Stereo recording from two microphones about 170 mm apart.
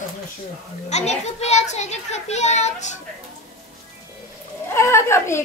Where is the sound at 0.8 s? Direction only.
40° left (ahead or behind).